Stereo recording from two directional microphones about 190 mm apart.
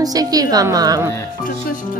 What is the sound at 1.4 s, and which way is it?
Speech, 45° left (ahead or behind).